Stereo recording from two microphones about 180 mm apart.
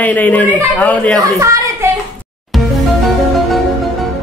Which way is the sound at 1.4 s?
15° right (ahead or behind).